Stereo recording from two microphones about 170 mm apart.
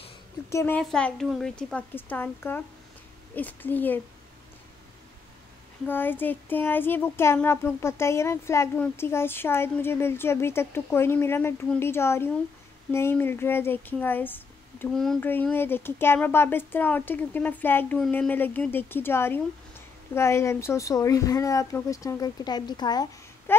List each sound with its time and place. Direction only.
0.5 s a woman's voice: 15° left (ahead or behind)
0.7 s speech: 5° left (ahead or behind)
5.9 s speech: 10° left (ahead or behind)